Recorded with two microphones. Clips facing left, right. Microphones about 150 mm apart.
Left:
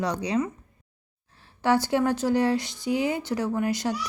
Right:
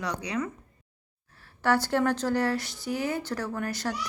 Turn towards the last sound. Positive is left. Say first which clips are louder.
# left 5 dB
turn(degrees=15)  # may be behind; listen again after turning